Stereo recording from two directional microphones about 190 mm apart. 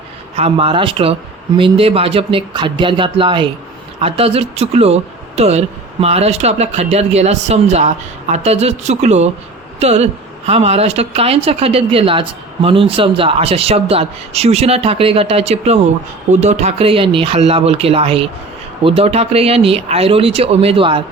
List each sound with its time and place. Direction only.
0.3 s speech: 30° right (ahead or behind)